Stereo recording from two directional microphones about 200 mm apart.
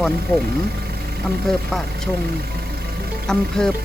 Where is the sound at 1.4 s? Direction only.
Centre (ahead or behind).